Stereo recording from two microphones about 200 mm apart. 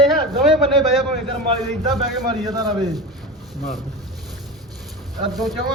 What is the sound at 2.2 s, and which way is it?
Speech, 20° right (ahead or behind).